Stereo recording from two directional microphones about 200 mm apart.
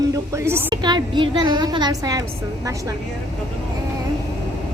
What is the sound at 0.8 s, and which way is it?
A woman's voice, 20° right (ahead or behind).